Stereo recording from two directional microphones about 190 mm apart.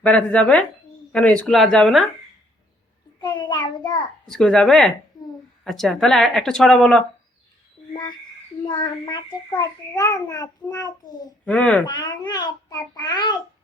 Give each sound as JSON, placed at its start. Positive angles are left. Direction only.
{"t": 0.0, "sound": "speech", "side_deg": 5}
{"t": 3.2, "sound": "child singing", "side_deg": 25}
{"t": 4.3, "sound": "speech", "side_deg": 5}
{"t": 5.2, "sound": "a sound", "side_deg": 20}
{"t": 5.6, "sound": "speech", "side_deg": 0}
{"t": 8.6, "sound": "a child's voice", "side_deg": 20}
{"t": 11.4, "sound": "speech", "side_deg": 5}
{"t": 11.9, "sound": "a child's voice", "side_deg": 25}